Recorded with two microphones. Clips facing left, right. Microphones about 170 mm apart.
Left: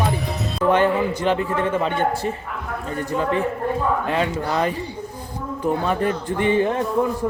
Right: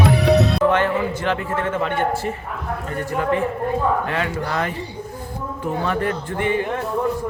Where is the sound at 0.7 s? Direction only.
15° left (ahead or behind).